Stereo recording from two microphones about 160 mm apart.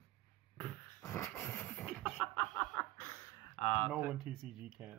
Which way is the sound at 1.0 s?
15° left (ahead or behind).